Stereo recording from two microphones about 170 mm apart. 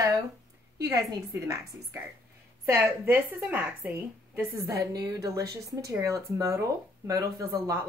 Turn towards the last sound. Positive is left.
turn(degrees=-20)  # may be behind; listen again after turning